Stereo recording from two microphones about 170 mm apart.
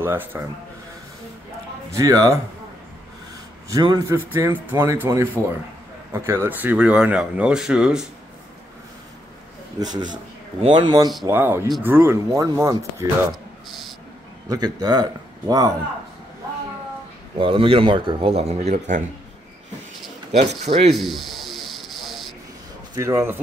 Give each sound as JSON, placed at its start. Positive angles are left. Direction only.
{"t": 0.0, "sound": "speech", "side_deg": -10}
{"t": 1.9, "sound": "speech", "side_deg": -20}
{"t": 3.7, "sound": "speech", "side_deg": -20}
{"t": 4.3, "sound": "speech", "side_deg": -10}
{"t": 9.8, "sound": "speech", "side_deg": -20}
{"t": 11.2, "sound": "speech", "side_deg": -15}
{"t": 13.7, "sound": "a sound", "side_deg": 0}
{"t": 14.5, "sound": "speech", "side_deg": -20}
{"t": 17.4, "sound": "a man's voice", "side_deg": -30}
{"t": 20.3, "sound": "a man's voice", "side_deg": -35}
{"t": 20.9, "sound": "snake", "side_deg": 0}
{"t": 22.9, "sound": "speech", "side_deg": -15}